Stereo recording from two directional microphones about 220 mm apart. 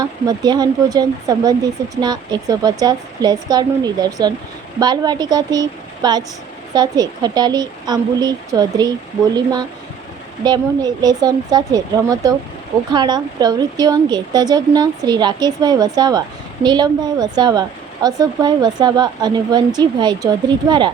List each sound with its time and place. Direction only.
0.0 s speech: 15° right (ahead or behind)